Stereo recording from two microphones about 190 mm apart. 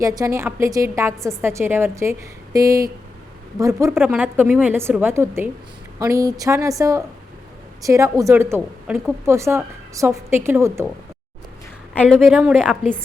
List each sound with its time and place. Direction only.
0.2 s a woman's voice: 15° right (ahead or behind)
11.9 s a woman's voice: 5° left (ahead or behind)